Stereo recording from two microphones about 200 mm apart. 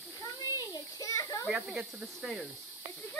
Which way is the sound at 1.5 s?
5° right (ahead or behind).